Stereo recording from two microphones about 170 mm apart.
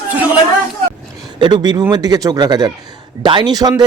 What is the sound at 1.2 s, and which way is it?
Speech, 25° right (ahead or behind).